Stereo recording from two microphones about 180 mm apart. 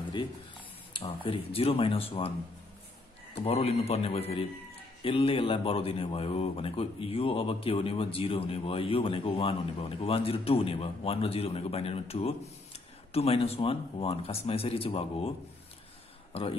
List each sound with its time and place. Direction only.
0.9 s speech: 30° left (ahead or behind)
3.4 s speech: 35° left (ahead or behind)
16.3 s speech: 30° left (ahead or behind)